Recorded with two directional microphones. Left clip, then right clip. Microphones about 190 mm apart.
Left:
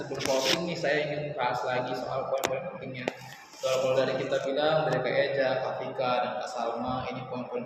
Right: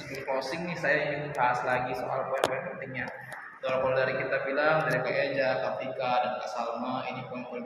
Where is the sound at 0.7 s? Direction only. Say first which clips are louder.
Right 1 dB; 5° left (ahead or behind).